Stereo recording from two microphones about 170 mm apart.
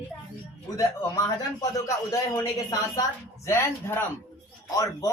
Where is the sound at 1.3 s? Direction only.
20° left (ahead or behind).